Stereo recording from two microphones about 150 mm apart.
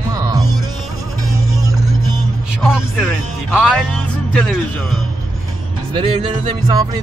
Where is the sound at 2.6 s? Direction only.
5° right (ahead or behind).